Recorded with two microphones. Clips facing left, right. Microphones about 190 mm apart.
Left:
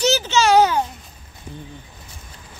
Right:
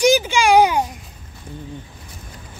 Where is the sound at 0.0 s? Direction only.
10° right (ahead or behind).